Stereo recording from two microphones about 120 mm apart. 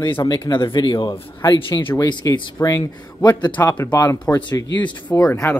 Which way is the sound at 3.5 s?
15° left (ahead or behind).